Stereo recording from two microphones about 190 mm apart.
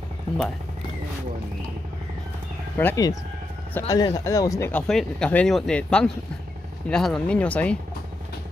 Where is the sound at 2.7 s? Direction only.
15° left (ahead or behind).